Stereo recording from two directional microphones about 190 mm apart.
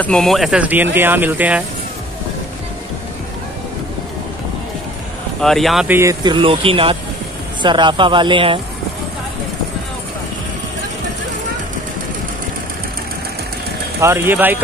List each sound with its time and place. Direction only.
0.0 s speech: 5° left (ahead or behind)
5.4 s speech: centre (ahead or behind)
5.9 s speech: 15° right (ahead or behind)
14.0 s speech: 10° right (ahead or behind)